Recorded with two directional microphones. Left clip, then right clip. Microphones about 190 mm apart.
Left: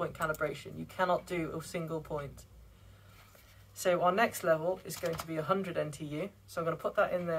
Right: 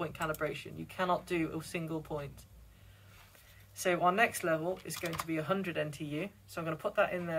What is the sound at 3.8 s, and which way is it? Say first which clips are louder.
Speech: left 1 dB; 15° left (ahead or behind).